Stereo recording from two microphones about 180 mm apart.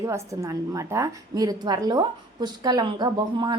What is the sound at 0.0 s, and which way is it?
A woman's voice, 15° right (ahead or behind).